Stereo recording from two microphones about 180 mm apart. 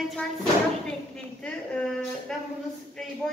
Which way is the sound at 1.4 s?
5° left (ahead or behind).